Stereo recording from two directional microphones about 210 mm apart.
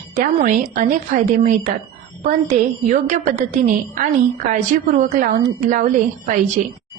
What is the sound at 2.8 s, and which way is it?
A woman's voice, 35° right (ahead or behind).